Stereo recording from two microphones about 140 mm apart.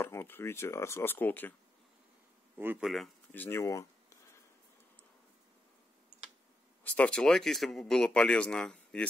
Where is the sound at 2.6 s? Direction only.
15° right (ahead or behind).